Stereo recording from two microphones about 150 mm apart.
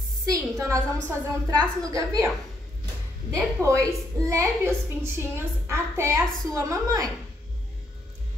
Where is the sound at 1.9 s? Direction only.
20° right (ahead or behind).